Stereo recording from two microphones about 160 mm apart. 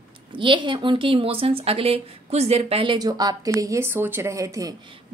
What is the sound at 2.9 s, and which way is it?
Speech, 25° right (ahead or behind).